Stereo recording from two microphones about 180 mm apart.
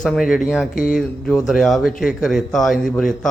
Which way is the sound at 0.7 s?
50° left (ahead or behind).